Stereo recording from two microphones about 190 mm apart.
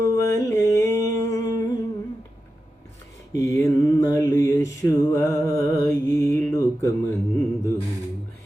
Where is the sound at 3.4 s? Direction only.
15° left (ahead or behind).